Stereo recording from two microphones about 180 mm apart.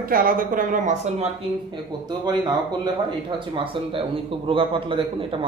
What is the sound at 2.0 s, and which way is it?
A man's voice, 25° right (ahead or behind).